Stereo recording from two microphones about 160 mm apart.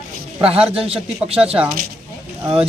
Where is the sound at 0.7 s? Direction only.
35° right (ahead or behind).